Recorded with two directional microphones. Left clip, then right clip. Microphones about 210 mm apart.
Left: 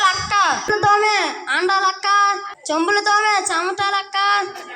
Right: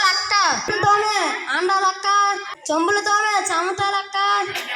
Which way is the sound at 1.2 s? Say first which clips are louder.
Left 1 dB; 10° right (ahead or behind).